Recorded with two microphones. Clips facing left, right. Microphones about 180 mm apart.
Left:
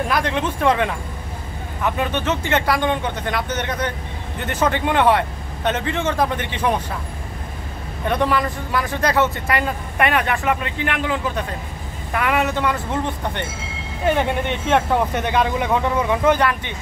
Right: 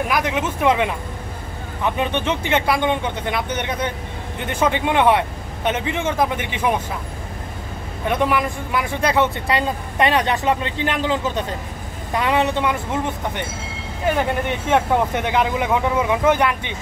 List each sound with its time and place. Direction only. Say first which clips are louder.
0.1 s speech: even; 10° right (ahead or behind)
8.1 s speech: even; 15° right (ahead or behind)
14.7 s speech: even; 10° right (ahead or behind)